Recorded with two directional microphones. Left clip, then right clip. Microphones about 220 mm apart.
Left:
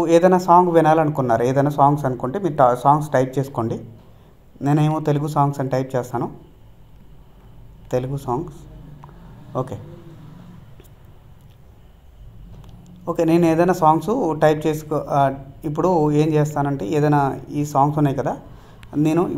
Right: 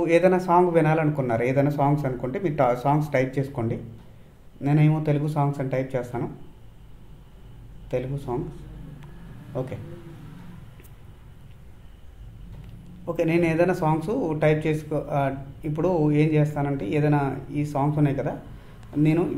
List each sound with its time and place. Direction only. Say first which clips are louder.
0.0 s a man's voice: left 5 dB; 30° left (ahead or behind)
7.9 s a man's voice: left 6 dB; 35° left (ahead or behind)
9.5 s speech: left 5 dB; 30° left (ahead or behind)
13.0 s a man's voice: left 6 dB; 30° left (ahead or behind)